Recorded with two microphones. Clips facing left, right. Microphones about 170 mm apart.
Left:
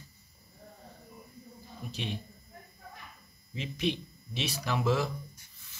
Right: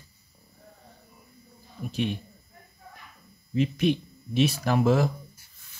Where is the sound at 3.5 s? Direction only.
50° right (ahead or behind).